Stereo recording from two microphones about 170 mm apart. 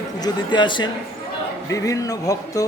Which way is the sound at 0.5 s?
30° left (ahead or behind).